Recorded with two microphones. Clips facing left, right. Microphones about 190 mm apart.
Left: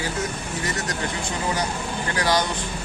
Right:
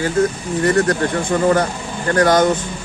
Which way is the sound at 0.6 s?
55° right (ahead or behind).